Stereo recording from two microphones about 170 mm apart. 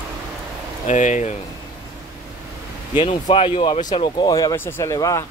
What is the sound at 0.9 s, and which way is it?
Speech, 45° left (ahead or behind).